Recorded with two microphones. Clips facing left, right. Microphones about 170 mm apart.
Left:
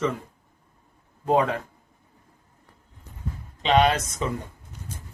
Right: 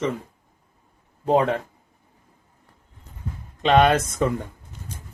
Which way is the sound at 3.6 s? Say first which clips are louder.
Right 3 dB; 55° right (ahead or behind).